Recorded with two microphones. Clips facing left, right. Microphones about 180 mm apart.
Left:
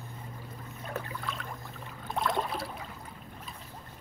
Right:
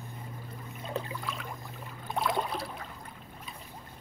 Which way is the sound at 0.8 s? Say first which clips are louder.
Right 2 dB; 20° right (ahead or behind).